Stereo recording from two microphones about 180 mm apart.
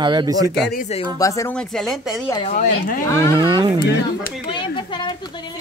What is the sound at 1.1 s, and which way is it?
Speech, 15° left (ahead or behind).